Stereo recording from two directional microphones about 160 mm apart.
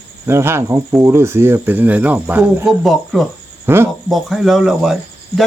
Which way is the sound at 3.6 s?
15° right (ahead or behind).